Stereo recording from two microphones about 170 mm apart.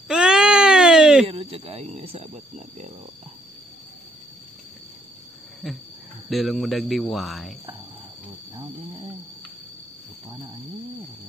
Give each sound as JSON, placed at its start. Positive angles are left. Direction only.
{"t": 0.1, "sound": "baby cry", "side_deg": -5}
{"t": 1.2, "sound": "speech", "side_deg": -35}
{"t": 5.6, "sound": "speech", "side_deg": 0}